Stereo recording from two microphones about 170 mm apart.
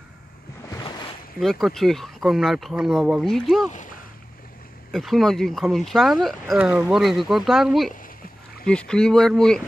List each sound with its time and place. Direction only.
1.4 s speech: centre (ahead or behind)
3.7 s boat: 50° left (ahead or behind)
4.9 s speech: centre (ahead or behind)